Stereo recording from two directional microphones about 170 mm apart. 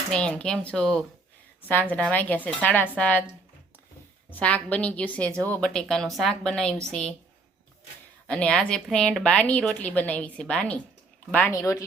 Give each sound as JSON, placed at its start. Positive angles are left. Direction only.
{"t": 0.1, "sound": "a woman's voice", "side_deg": 5}
{"t": 4.3, "sound": "a woman's voice", "side_deg": 10}
{"t": 8.3, "sound": "a woman's voice", "side_deg": 5}
{"t": 11.5, "sound": "speech", "side_deg": 20}